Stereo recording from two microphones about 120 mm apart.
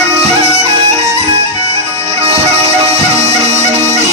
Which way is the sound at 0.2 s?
60° right (ahead or behind).